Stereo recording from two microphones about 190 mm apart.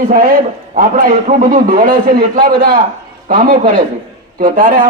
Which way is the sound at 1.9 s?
25° right (ahead or behind).